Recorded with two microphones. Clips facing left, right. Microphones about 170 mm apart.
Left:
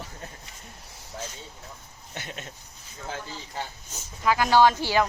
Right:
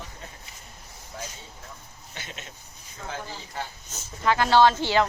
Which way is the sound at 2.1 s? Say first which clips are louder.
Left 3 dB; 50° left (ahead or behind).